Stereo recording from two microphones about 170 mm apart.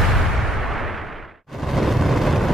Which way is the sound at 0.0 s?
Centre (ahead or behind).